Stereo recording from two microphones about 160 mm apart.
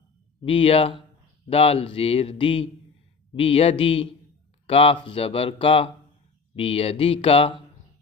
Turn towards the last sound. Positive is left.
turn(degrees=35)  # may be behind; listen again after turning